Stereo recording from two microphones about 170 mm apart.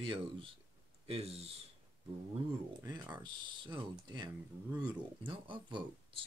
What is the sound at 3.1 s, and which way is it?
Speech, 25° right (ahead or behind).